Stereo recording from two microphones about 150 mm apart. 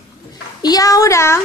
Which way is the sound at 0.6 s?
25° left (ahead or behind).